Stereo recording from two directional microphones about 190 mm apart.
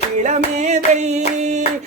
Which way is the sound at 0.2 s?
40° right (ahead or behind).